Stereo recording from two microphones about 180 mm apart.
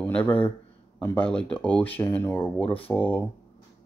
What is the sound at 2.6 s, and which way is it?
Speech, 30° left (ahead or behind).